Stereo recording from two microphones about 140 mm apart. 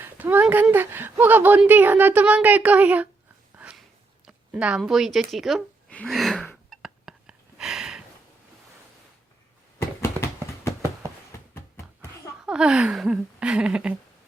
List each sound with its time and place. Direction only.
0.0 s speech: 15° right (ahead or behind)
4.3 s a sound: 5° right (ahead or behind)
4.8 s speech: centre (ahead or behind)
5.9 s gasp: 5° left (ahead or behind)
9.7 s a sound: 20° left (ahead or behind)
12.5 s speech: 5° right (ahead or behind)